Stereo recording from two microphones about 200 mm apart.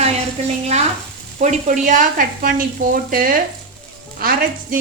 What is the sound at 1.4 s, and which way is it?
Speech, 40° right (ahead or behind).